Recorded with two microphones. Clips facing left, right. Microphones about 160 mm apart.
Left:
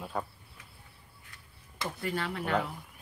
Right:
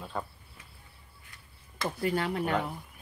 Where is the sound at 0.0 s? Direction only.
5° left (ahead or behind).